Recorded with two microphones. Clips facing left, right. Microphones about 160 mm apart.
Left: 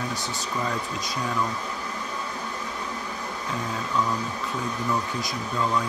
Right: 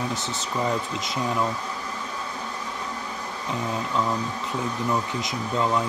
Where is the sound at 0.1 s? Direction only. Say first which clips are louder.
Right 1 dB; 20° right (ahead or behind).